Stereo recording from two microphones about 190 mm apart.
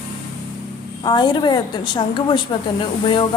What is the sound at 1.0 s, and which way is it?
A woman's voice, 20° left (ahead or behind).